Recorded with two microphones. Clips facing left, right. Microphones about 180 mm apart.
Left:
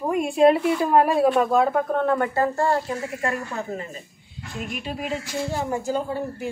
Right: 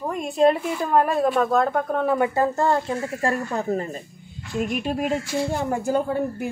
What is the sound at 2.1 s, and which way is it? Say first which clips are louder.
Speech: right 1 dB; 15° right (ahead or behind).